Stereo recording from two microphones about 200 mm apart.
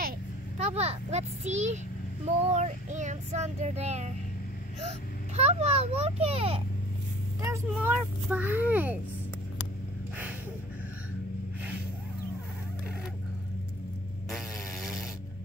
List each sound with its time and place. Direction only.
0.6 s a child's voice: 30° right (ahead or behind)
7.4 s a child's voice: 10° right (ahead or behind)
14.3 s vehicle: centre (ahead or behind)